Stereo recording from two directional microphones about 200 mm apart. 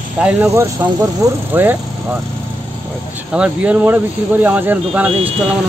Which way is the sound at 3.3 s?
5° right (ahead or behind).